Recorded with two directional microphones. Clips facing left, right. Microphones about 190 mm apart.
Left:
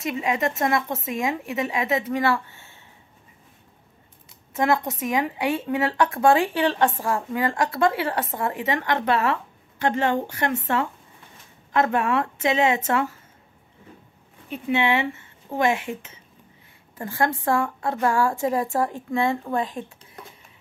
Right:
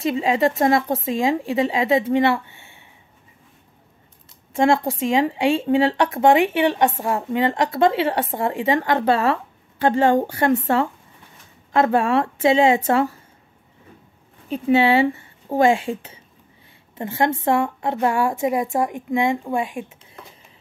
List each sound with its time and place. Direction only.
0.0 s speech: 30° right (ahead or behind)
4.6 s speech: 25° right (ahead or behind)
14.5 s a woman's voice: 35° right (ahead or behind); by 19.9 s 10° right (ahead or behind)